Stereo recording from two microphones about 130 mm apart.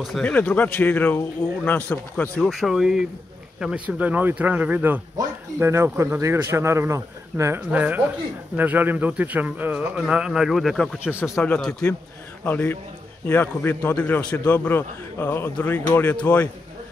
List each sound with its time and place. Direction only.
0.0 s speech: centre (ahead or behind)
0.3 s a man's voice: 10° left (ahead or behind)
2.3 s a man's voice: centre (ahead or behind)